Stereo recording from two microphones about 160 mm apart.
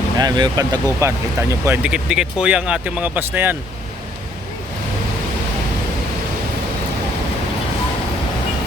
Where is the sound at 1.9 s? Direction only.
5° right (ahead or behind).